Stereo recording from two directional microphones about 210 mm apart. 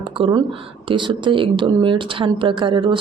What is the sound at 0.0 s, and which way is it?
Speech, 25° right (ahead or behind).